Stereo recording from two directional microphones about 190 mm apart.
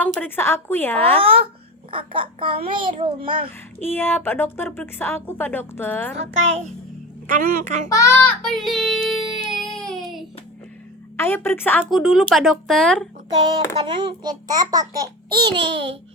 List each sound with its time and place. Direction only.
0.0 s a woman's voice: 10° left (ahead or behind)
1.1 s a child's voice: 30° right (ahead or behind)
3.8 s a woman's voice: 10° left (ahead or behind)
6.1 s music: 90° right
7.3 s a woman's voice: 40° right (ahead or behind)
7.9 s a woman's voice: 15° left (ahead or behind)
8.4 s child singing: centre (ahead or behind)
11.2 s a woman's voice: 10° left (ahead or behind)
13.8 s a child's voice: 25° right (ahead or behind)